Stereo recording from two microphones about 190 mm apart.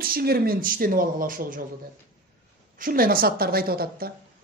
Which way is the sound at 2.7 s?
50° right (ahead or behind).